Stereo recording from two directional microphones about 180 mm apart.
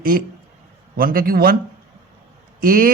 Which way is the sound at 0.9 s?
55° right (ahead or behind).